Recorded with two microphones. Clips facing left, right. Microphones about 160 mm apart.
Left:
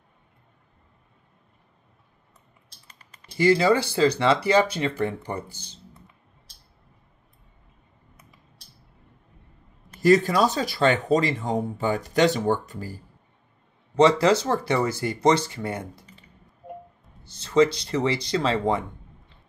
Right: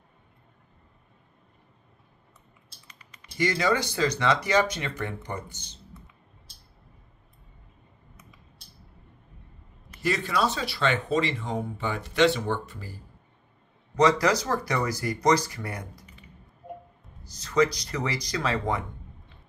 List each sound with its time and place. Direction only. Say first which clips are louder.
2.9 s speech: left 2 dB; 35° left (ahead or behind)
9.9 s speech: left 9 dB; 40° left (ahead or behind)
13.9 s speech: left 4 dB; 25° left (ahead or behind)
17.2 s speech: left 4 dB; 25° left (ahead or behind)